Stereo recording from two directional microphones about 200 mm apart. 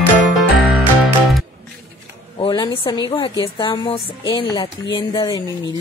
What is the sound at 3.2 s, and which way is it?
Speech, 20° left (ahead or behind).